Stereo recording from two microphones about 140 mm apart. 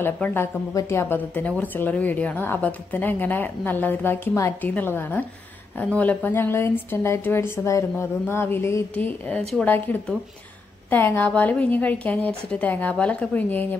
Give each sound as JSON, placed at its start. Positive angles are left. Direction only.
{"t": 0.0, "sound": "a woman's voice", "side_deg": 15}